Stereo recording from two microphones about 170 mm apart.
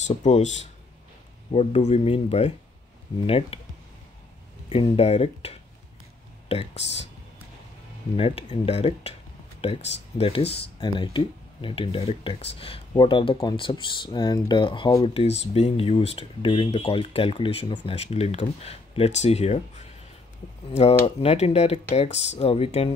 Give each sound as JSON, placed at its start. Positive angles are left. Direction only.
{"t": 0.0, "sound": "speech", "side_deg": 40}
{"t": 4.6, "sound": "speech", "side_deg": 35}
{"t": 8.2, "sound": "speech", "side_deg": 35}